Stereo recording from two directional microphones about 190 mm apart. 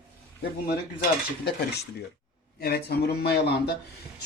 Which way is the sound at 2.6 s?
55° left (ahead or behind).